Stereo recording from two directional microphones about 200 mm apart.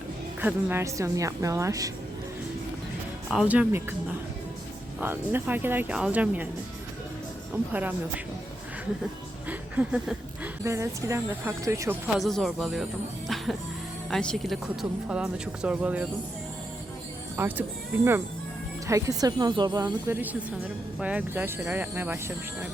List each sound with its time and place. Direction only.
0.4 s speech: 10° right (ahead or behind)
3.2 s speech: 5° right (ahead or behind)
4.9 s speech: 10° right (ahead or behind)
7.5 s speech: 10° right (ahead or behind)
9.5 s a woman's voice: 5° right (ahead or behind)
12.2 s speech: centre (ahead or behind)
13.2 s music: centre (ahead or behind)
14.1 s speech: 5° left (ahead or behind)
17.3 s speech: 10° right (ahead or behind)